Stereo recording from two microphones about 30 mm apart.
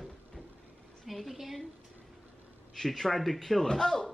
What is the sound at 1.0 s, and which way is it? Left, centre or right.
Speech, centre.